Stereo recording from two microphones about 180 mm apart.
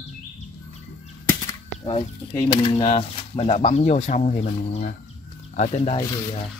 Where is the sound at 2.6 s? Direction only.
30° left (ahead or behind).